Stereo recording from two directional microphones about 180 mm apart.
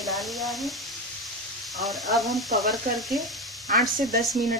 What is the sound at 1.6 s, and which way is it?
Speech, centre (ahead or behind).